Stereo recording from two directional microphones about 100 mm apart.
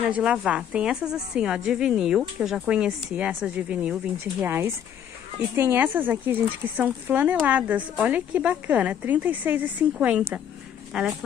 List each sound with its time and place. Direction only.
0.1 s a woman's voice: 15° right (ahead or behind)
4.4 s a woman's voice: 25° right (ahead or behind); by 11.1 s 5° right (ahead or behind)